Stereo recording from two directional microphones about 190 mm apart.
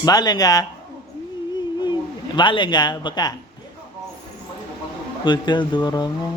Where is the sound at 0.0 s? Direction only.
20° left (ahead or behind).